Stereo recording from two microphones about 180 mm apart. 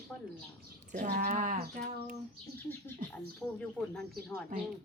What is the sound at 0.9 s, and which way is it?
Speech, 45° right (ahead or behind).